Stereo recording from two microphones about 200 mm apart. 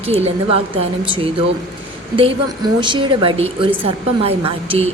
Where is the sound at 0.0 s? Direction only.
30° right (ahead or behind).